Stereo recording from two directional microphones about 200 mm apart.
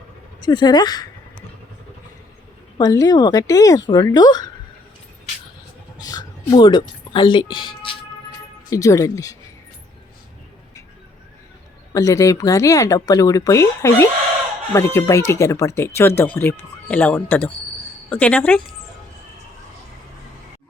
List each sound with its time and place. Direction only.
0.4 s speech: 20° left (ahead or behind)
2.7 s speech: 20° left (ahead or behind)
6.0 s music: 20° left (ahead or behind)
8.7 s speech: 15° left (ahead or behind)
11.9 s speech: 15° left (ahead or behind)